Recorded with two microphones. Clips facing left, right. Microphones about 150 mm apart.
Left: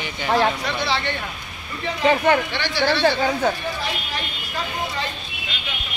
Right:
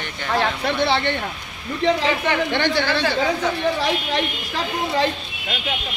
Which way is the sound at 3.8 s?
75° right (ahead or behind).